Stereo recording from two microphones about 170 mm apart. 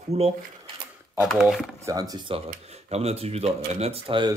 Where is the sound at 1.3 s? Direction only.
Centre (ahead or behind).